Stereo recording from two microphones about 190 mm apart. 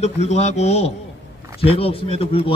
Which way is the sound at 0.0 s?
35° left (ahead or behind).